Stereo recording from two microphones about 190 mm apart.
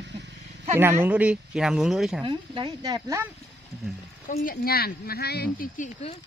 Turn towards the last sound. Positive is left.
turn(degrees=40)  # may be behind; listen again after turning